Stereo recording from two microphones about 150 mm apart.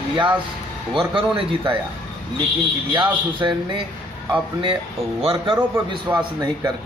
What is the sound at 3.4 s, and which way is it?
Speech, 20° right (ahead or behind).